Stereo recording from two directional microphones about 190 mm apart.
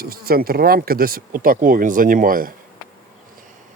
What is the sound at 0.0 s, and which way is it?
Speech, 50° right (ahead or behind).